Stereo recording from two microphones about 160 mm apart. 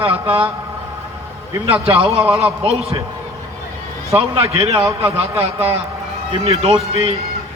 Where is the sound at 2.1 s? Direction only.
5° right (ahead or behind).